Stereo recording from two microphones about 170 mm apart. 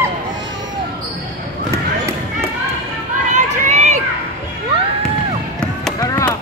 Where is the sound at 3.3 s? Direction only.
45° right (ahead or behind).